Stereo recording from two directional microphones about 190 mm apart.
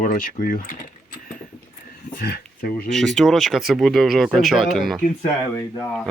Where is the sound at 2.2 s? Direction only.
55° left (ahead or behind).